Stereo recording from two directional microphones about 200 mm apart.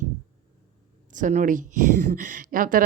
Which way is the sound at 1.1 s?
40° right (ahead or behind).